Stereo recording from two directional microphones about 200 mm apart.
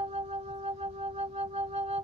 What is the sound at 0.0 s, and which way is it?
Music, 30° right (ahead or behind).